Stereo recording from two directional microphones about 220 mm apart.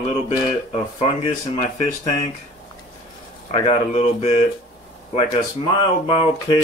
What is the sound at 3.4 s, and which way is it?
Speech, 30° left (ahead or behind).